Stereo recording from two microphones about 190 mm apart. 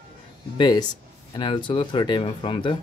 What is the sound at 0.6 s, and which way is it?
Speech, 20° left (ahead or behind).